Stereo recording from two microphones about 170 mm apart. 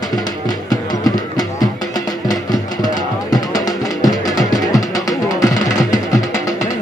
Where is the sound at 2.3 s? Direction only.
20° left (ahead or behind).